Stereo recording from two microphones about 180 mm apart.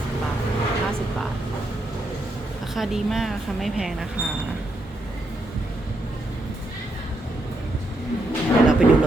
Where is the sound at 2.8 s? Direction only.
Centre (ahead or behind).